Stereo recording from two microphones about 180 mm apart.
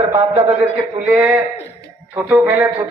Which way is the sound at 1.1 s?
10° right (ahead or behind).